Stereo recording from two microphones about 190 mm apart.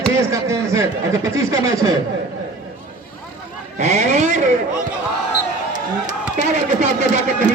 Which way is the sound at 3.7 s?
40° right (ahead or behind).